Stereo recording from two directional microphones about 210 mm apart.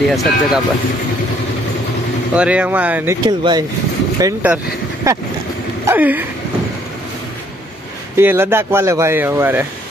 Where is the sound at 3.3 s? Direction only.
20° right (ahead or behind).